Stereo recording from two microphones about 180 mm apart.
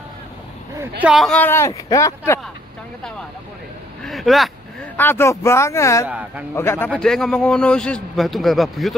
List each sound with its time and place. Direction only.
1.1 s speech: 5° left (ahead or behind)
4.0 s speech: centre (ahead or behind)
4.9 s speech: 10° left (ahead or behind)
6.0 s speech: 5° right (ahead or behind)
6.5 s a man's voice: 15° left (ahead or behind)